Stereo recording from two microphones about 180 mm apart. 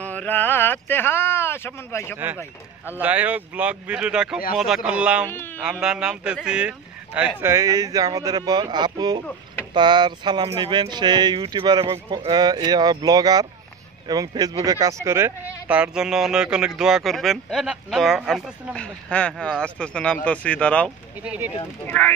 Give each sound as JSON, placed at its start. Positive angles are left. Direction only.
{"t": 0.0, "sound": "speech", "side_deg": 10}
{"t": 2.8, "sound": "speech", "side_deg": -10}
{"t": 7.3, "sound": "speech", "side_deg": -15}
{"t": 21.2, "sound": "speech", "side_deg": -5}
{"t": 21.8, "sound": "speech", "side_deg": 10}